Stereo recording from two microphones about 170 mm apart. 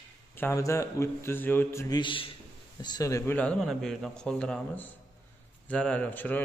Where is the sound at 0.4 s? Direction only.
15° left (ahead or behind).